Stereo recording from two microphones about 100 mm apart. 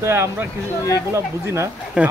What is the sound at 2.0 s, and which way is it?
Speech, 10° right (ahead or behind).